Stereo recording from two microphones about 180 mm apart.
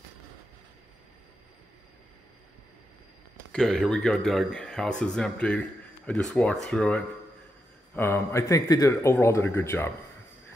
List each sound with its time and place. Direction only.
3.5 s a man's voice: centre (ahead or behind)